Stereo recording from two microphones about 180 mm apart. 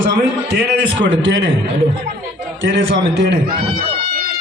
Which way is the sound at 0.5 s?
90° right.